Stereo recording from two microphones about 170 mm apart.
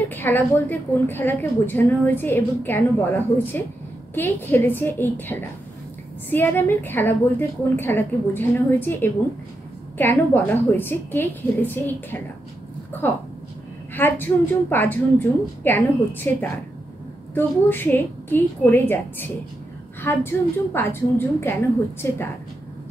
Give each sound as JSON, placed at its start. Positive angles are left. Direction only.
{"t": 0.1, "sound": "a woman's voice", "side_deg": 10}